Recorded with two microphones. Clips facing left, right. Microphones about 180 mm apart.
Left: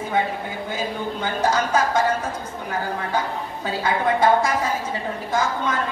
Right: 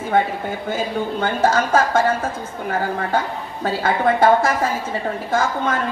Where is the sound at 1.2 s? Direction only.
50° right (ahead or behind).